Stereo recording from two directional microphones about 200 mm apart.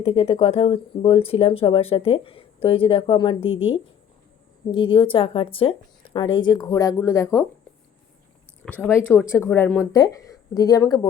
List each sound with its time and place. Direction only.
0.0 s speech: 30° left (ahead or behind)
8.6 s speech: 10° left (ahead or behind)